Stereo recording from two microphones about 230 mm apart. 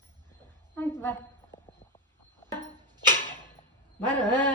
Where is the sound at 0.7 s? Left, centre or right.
Centre.